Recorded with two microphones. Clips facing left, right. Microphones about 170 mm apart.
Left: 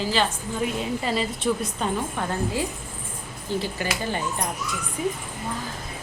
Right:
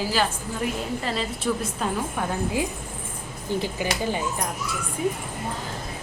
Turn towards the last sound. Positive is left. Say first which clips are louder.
# right 1 dB
turn(degrees=0)  # may be behind; listen again after turning